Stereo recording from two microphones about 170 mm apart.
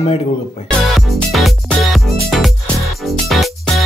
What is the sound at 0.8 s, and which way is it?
Music, centre (ahead or behind).